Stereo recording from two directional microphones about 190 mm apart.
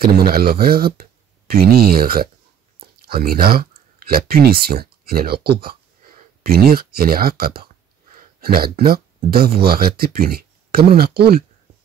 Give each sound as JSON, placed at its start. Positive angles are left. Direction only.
{"t": 0.0, "sound": "speech", "side_deg": -55}